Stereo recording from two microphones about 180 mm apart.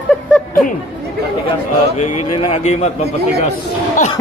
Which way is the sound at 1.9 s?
35° left (ahead or behind).